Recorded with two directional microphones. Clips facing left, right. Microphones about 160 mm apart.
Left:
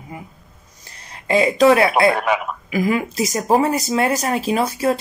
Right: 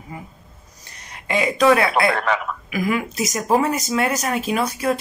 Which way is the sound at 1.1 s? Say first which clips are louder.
Left 5 dB; 30° left (ahead or behind).